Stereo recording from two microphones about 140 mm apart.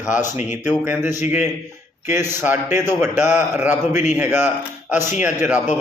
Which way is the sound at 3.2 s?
60° left (ahead or behind).